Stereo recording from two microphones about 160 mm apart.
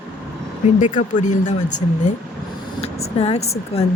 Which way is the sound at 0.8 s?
50° left (ahead or behind).